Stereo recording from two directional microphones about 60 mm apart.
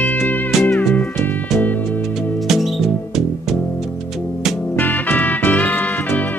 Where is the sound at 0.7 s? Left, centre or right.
Left.